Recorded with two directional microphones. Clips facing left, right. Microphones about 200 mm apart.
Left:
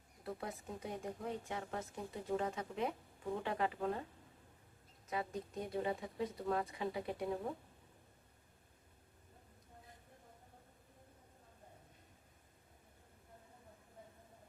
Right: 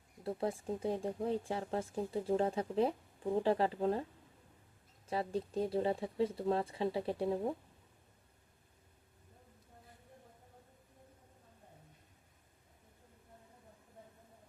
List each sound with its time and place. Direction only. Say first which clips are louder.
0.3 s speech: right 8 dB; 30° right (ahead or behind)
5.0 s speech: right 5 dB; 30° right (ahead or behind)